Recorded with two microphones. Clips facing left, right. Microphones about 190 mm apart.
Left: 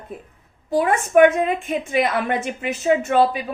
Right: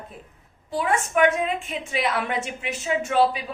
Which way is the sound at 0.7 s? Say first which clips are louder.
Left 7 dB; 50° left (ahead or behind).